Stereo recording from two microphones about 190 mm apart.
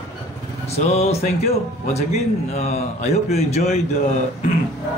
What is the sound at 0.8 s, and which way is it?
Speech, 35° left (ahead or behind).